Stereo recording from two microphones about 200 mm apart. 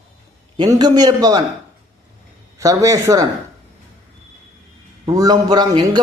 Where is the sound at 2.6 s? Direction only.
15° right (ahead or behind).